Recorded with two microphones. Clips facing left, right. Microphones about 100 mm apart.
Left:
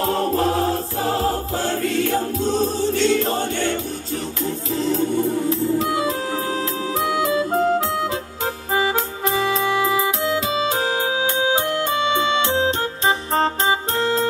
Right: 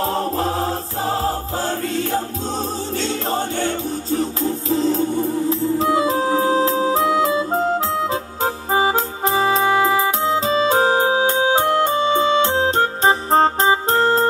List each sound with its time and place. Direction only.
0.0 s choir: 35° right (ahead or behind)
4.6 s music: 35° right (ahead or behind)